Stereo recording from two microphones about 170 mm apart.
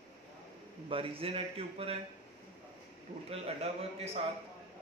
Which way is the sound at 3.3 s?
35° right (ahead or behind).